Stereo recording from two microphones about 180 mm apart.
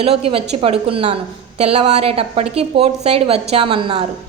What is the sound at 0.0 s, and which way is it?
A woman's voice, 35° right (ahead or behind).